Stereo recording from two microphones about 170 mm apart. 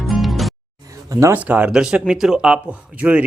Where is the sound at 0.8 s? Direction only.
20° right (ahead or behind).